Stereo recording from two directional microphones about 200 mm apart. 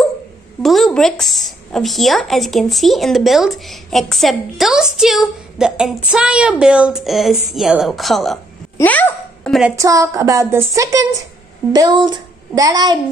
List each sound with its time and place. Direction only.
0.6 s a child's voice: centre (ahead or behind)
9.8 s speech: 15° right (ahead or behind)